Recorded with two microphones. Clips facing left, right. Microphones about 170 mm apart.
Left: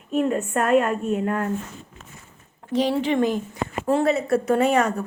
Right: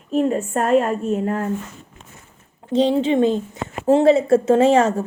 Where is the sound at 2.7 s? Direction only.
25° right (ahead or behind).